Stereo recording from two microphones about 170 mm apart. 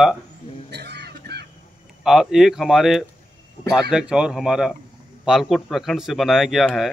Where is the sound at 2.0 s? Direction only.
5° right (ahead or behind).